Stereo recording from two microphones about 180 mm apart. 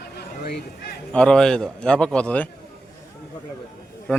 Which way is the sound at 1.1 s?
5° left (ahead or behind).